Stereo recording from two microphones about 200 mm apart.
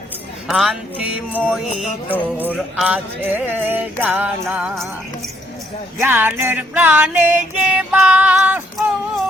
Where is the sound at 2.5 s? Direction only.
5° right (ahead or behind).